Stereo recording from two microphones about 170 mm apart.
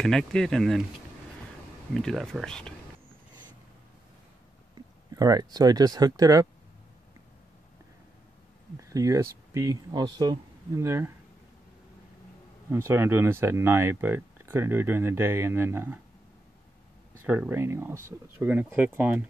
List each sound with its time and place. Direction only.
0.0 s speech: 5° left (ahead or behind)
2.0 s speech: 5° left (ahead or behind)
5.1 s speech: 20° right (ahead or behind)
8.8 s speech: 20° right (ahead or behind)
12.7 s speech: 15° right (ahead or behind)
17.2 s speech: 10° right (ahead or behind)